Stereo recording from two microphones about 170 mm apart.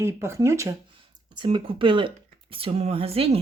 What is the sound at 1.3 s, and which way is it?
Speech, 30° right (ahead or behind).